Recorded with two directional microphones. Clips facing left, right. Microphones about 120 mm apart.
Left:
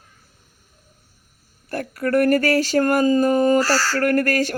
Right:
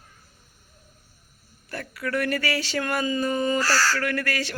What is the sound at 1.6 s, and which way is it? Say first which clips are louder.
Speech: left 8 dB; 45° left (ahead or behind).